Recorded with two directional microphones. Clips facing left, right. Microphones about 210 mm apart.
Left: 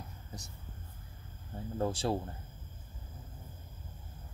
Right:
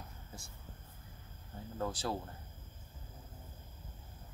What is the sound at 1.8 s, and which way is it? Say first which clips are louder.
Speech: left 5 dB; 30° left (ahead or behind).